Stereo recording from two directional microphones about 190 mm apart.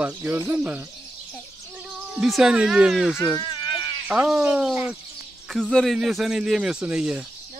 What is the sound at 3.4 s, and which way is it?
Insect, 25° left (ahead or behind).